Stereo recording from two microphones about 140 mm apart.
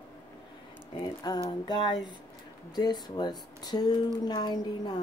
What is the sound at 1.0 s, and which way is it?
Speech, 25° left (ahead or behind).